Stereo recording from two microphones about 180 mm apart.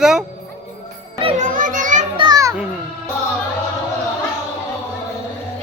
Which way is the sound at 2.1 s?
20° right (ahead or behind).